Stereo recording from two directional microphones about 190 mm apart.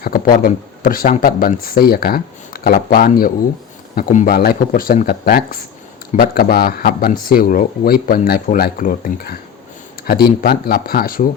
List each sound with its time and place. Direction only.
0.0 s speech: 50° left (ahead or behind)